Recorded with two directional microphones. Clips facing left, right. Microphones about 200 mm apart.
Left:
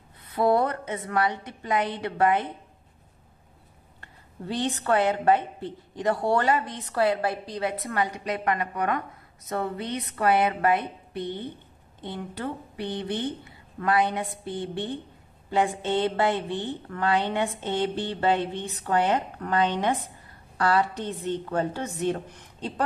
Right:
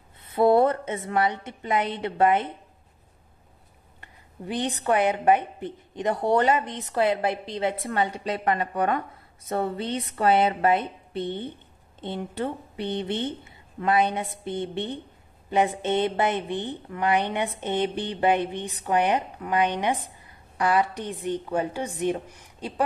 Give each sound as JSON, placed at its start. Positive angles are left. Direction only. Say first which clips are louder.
{"t": 0.2, "sound": "a woman's voice", "louder": "right 4 dB", "side_deg": -25}
{"t": 4.0, "sound": "a woman's voice", "louder": "even", "side_deg": -15}